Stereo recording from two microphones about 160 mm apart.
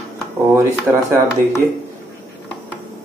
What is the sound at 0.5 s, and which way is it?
Speech, 15° right (ahead or behind).